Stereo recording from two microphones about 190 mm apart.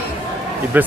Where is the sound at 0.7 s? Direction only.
10° right (ahead or behind).